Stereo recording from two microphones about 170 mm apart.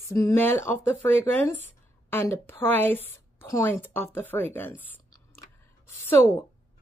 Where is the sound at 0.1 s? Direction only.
15° left (ahead or behind).